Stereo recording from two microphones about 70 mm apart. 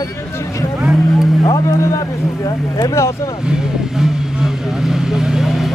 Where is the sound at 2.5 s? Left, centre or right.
Left.